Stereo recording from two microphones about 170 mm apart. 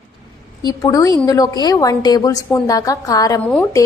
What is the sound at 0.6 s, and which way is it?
A woman's voice, 20° left (ahead or behind).